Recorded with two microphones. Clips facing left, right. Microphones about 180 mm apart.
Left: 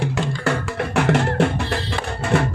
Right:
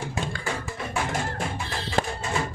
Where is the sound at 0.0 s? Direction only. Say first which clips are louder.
Left 8 dB; 70° left (ahead or behind).